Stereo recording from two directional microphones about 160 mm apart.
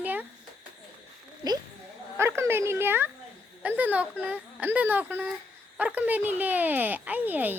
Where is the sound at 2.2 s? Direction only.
15° right (ahead or behind).